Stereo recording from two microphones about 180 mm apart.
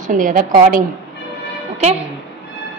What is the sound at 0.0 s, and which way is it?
Speech, 50° right (ahead or behind).